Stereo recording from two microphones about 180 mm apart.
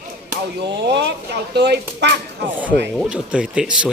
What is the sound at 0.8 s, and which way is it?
Speech, 70° right (ahead or behind).